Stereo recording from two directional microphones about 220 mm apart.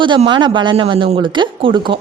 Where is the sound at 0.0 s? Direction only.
20° right (ahead or behind).